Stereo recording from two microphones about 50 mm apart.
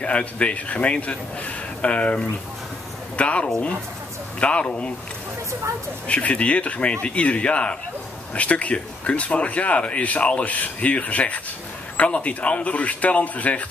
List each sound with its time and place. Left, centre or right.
0.0 s speech: left
6.0 s speech: left